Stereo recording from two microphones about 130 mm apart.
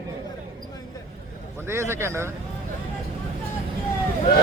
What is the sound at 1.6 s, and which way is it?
Speech, 20° right (ahead or behind).